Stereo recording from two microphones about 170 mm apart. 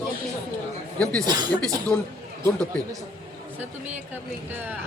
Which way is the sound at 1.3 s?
25° right (ahead or behind).